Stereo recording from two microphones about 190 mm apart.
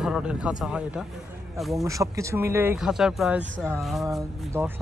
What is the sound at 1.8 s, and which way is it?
Speech, 15° right (ahead or behind).